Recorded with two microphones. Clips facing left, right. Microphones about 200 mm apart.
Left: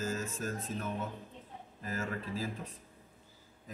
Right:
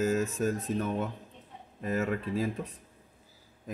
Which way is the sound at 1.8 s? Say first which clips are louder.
Right 8 dB; 65° right (ahead or behind).